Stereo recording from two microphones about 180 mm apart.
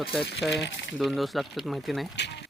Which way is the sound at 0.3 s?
75° left (ahead or behind).